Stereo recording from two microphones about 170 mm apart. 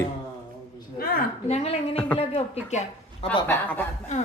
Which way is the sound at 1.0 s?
60° left (ahead or behind).